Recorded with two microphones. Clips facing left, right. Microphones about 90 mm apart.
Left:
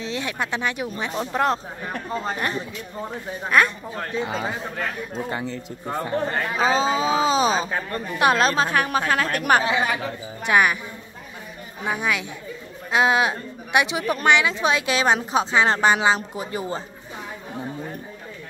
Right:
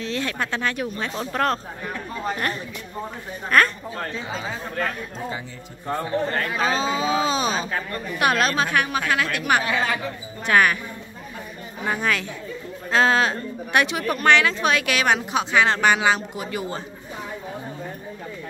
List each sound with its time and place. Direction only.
0.0 s speech: 15° left (ahead or behind)
3.4 s speech: 10° left (ahead or behind)
5.9 s a woman's voice: 10° left (ahead or behind); by 9.4 s 35° left (ahead or behind)
9.7 s speech: 15° left (ahead or behind)
11.8 s speech: 5° left (ahead or behind); by 16.8 s 30° left (ahead or behind)